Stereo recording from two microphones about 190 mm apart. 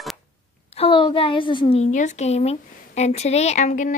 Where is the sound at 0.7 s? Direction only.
25° left (ahead or behind).